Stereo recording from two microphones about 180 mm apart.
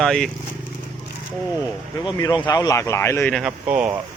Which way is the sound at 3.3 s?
Centre (ahead or behind).